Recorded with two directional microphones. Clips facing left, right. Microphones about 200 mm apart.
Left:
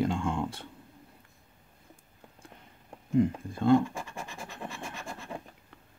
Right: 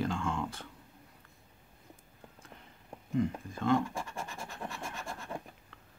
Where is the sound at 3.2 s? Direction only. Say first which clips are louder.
Left 6 dB; 30° left (ahead or behind).